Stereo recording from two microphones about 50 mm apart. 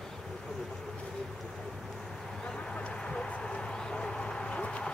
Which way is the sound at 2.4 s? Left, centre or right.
Centre.